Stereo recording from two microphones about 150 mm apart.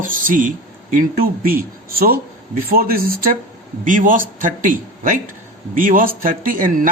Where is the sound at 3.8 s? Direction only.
65° right (ahead or behind).